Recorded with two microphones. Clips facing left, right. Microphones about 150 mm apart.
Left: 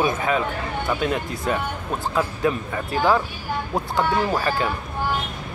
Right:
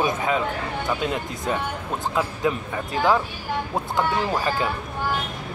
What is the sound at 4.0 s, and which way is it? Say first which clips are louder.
Speech: left 2 dB; 20° right (ahead or behind).